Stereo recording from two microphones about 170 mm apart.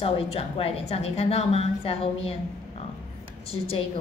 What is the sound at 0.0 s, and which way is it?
A woman's voice, 35° left (ahead or behind).